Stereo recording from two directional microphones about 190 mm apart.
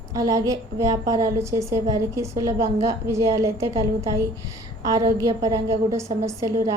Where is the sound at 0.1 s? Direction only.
20° right (ahead or behind).